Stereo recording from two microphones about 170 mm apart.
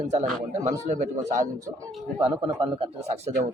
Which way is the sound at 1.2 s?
15° right (ahead or behind).